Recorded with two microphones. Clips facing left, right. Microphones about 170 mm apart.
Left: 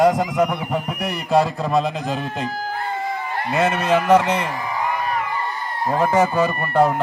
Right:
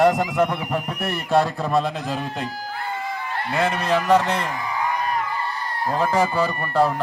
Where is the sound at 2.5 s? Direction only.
50° left (ahead or behind).